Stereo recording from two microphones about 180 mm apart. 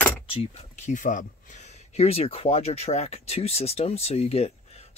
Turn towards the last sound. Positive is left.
turn(degrees=35)  # may be behind; listen again after turning